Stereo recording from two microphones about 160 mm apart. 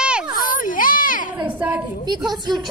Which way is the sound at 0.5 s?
60° left (ahead or behind).